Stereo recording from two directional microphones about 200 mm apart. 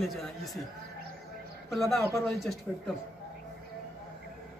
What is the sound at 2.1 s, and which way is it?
Speech, 15° left (ahead or behind).